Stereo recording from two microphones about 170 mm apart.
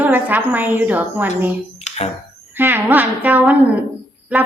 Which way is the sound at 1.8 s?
40° left (ahead or behind).